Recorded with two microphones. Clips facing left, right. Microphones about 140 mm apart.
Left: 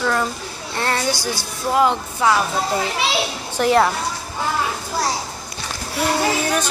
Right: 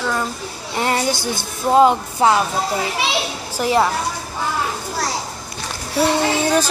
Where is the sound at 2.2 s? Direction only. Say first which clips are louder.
Right 3 dB; 30° right (ahead or behind).